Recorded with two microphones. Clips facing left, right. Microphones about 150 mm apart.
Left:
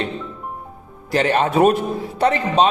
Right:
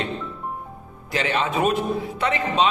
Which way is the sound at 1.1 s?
45° left (ahead or behind).